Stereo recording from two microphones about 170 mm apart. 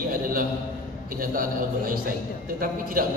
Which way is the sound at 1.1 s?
55° right (ahead or behind).